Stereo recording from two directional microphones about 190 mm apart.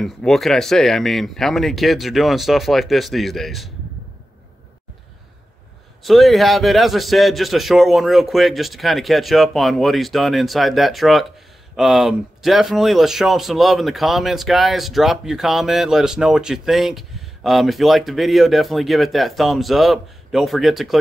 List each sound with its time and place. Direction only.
0.0 s speech: centre (ahead or behind)
6.0 s speech: centre (ahead or behind)